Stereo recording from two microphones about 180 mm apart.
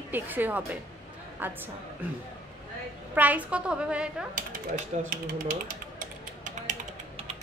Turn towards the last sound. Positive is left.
turn(degrees=-45)  # may be behind; listen again after turning